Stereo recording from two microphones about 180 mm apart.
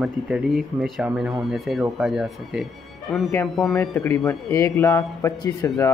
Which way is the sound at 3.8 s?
15° left (ahead or behind).